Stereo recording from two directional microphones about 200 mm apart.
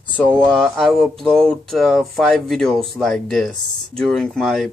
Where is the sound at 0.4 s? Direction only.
5° left (ahead or behind).